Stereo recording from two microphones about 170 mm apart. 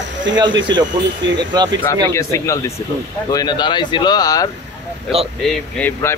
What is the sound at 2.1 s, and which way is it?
Speech, 15° left (ahead or behind).